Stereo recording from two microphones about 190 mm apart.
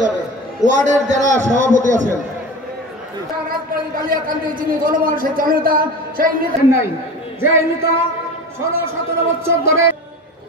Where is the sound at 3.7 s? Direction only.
50° right (ahead or behind).